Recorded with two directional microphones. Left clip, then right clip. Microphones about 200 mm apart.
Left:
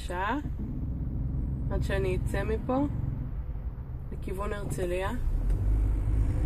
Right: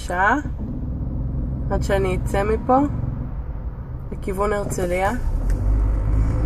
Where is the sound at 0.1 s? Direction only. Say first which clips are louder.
Right 13 dB; 15° left (ahead or behind).